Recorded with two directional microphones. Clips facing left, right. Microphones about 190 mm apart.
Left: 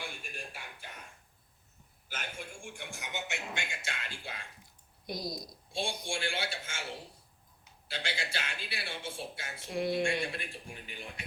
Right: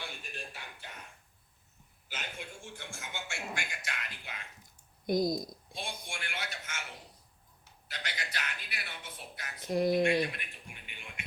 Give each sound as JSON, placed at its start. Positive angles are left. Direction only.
{"t": 0.2, "sound": "music", "side_deg": 10}
{"t": 2.1, "sound": "a sound", "side_deg": 10}
{"t": 5.0, "sound": "speech", "side_deg": -50}
{"t": 5.7, "sound": "speech", "side_deg": 30}
{"t": 9.6, "sound": "speech", "side_deg": -40}
{"t": 10.2, "sound": "a man's voice", "side_deg": 30}